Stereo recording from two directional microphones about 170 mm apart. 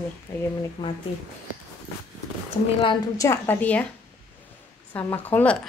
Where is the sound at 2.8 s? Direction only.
30° left (ahead or behind).